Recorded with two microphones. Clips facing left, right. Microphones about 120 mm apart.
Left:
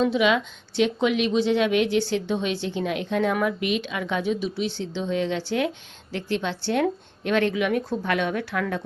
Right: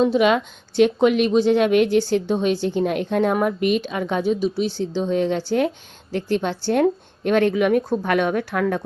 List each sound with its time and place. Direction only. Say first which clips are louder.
0.0 s a woman's voice: right 4 dB; 45° right (ahead or behind)